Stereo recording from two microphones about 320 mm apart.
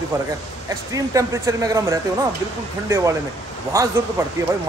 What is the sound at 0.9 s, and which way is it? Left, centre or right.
Speech, centre.